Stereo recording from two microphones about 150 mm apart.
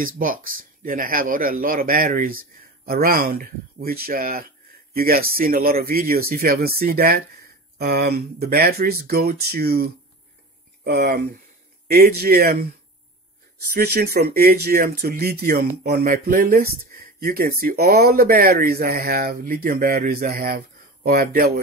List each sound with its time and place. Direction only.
0.0 s speech: 65° right (ahead or behind); by 12.6 s 90° right
13.7 s speech: 90° right